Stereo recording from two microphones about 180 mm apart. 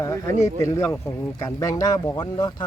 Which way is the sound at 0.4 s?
15° left (ahead or behind).